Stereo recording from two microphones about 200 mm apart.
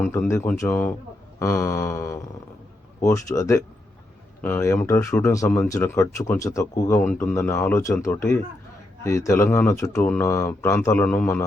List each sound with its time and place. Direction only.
0.0 s speech: 10° left (ahead or behind)